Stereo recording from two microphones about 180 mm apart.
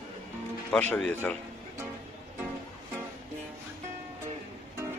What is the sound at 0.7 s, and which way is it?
Speech, 5° left (ahead or behind).